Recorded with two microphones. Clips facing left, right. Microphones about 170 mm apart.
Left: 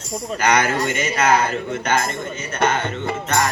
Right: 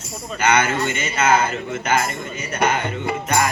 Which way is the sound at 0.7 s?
Centre (ahead or behind).